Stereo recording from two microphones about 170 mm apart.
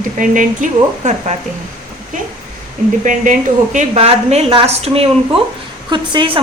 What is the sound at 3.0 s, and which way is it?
A woman's voice, 50° right (ahead or behind).